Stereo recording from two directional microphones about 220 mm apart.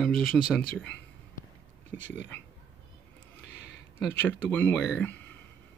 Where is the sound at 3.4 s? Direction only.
50° left (ahead or behind).